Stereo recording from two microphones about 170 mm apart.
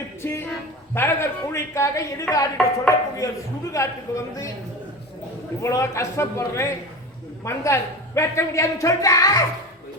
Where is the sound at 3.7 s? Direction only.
20° left (ahead or behind).